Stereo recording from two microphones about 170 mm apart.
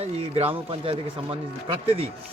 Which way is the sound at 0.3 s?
35° right (ahead or behind).